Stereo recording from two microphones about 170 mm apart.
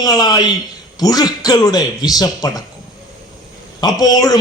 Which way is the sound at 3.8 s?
20° left (ahead or behind).